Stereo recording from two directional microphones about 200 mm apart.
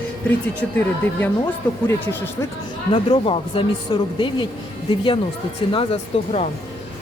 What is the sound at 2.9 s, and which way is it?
Speech, 25° left (ahead or behind).